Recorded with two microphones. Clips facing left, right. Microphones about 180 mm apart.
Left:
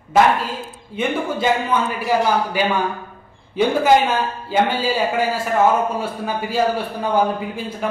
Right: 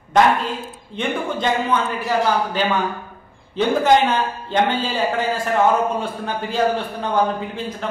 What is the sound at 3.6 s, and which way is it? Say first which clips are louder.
A man's voice: left 1 dB; 10° left (ahead or behind).